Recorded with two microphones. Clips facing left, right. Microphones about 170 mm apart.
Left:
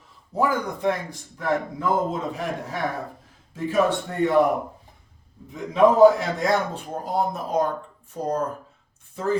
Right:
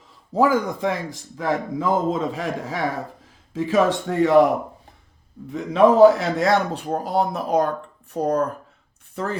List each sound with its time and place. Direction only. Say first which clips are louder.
0.3 s a man's voice: right 5 dB; 90° right
5.7 s speech: right 2 dB; 75° right (ahead or behind)